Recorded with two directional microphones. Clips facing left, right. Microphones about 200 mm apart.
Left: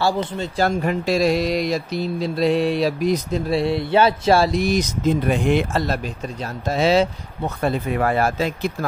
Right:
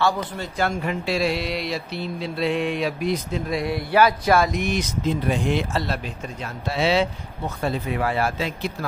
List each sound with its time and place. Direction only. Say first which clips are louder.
0.0 s a man's voice: left 2 dB; 30° left (ahead or behind)
0.7 s mantra: left 6 dB; 40° left (ahead or behind)
5.3 s speech: left 4 dB; 55° left (ahead or behind)
7.4 s speech: left 4 dB; 55° left (ahead or behind)